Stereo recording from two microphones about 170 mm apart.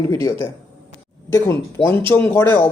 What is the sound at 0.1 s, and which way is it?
Speech, 20° left (ahead or behind).